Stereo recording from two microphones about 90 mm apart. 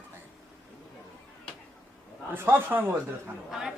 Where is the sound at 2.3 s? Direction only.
25° right (ahead or behind).